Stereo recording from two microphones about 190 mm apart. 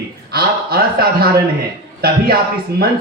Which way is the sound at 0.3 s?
55° right (ahead or behind).